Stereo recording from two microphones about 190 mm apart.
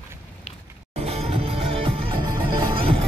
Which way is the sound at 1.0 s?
30° right (ahead or behind).